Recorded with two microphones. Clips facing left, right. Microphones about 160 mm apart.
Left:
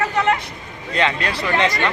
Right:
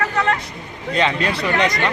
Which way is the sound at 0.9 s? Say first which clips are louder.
Right 1 dB; 20° right (ahead or behind).